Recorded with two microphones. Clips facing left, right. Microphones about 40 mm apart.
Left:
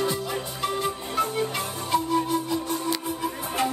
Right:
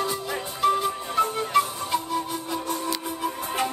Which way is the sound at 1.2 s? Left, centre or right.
Centre.